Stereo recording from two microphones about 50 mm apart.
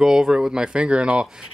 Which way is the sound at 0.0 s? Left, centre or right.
Centre.